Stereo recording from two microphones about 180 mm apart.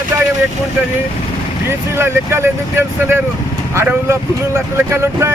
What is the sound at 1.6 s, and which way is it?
Speech, 15° right (ahead or behind).